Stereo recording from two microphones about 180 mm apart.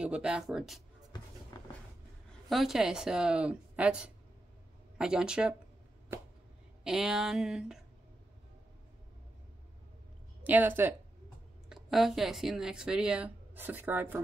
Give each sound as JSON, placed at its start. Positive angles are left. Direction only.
{"t": 0.0, "sound": "speech", "side_deg": -5}
{"t": 1.5, "sound": "vehicle", "side_deg": 20}
{"t": 2.5, "sound": "speech", "side_deg": 0}
{"t": 6.8, "sound": "speech", "side_deg": 0}
{"t": 10.4, "sound": "speech", "side_deg": -10}